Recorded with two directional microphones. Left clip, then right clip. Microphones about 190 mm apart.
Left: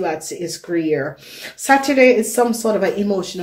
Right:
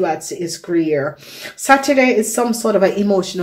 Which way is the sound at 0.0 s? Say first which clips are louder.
Right 3 dB; 20° right (ahead or behind).